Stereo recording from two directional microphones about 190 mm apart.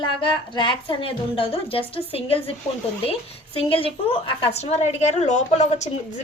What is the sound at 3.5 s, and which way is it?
A woman's voice, 30° left (ahead or behind).